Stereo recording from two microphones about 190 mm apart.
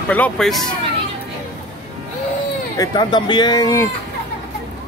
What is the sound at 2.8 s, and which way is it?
Speech, 25° left (ahead or behind).